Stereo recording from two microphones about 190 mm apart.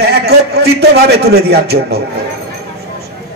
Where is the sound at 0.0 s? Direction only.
55° right (ahead or behind).